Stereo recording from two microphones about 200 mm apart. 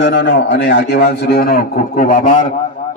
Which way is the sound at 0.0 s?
65° left (ahead or behind).